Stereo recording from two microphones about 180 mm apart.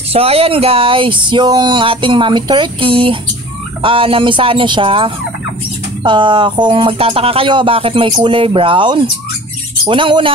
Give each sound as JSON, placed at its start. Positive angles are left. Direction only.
{"t": 0.1, "sound": "speech", "side_deg": -35}